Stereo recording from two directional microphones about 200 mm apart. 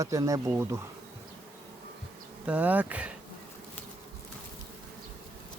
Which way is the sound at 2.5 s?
10° right (ahead or behind).